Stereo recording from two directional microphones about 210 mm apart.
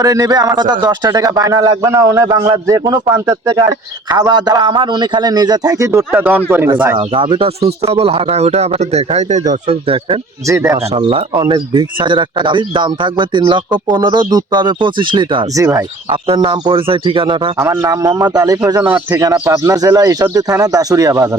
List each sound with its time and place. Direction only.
0.0 s a man's voice: 15° right (ahead or behind)
7.1 s speech: 25° right (ahead or behind)
10.4 s a man's voice: 15° right (ahead or behind)
10.9 s speech: 25° right (ahead or behind)
17.6 s a man's voice: 15° right (ahead or behind)